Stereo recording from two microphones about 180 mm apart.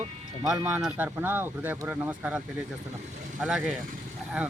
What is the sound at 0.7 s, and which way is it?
Speech, 10° right (ahead or behind).